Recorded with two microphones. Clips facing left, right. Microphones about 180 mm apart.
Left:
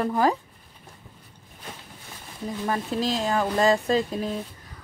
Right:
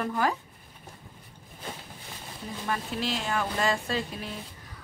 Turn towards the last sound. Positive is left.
turn(degrees=40)  # may be behind; listen again after turning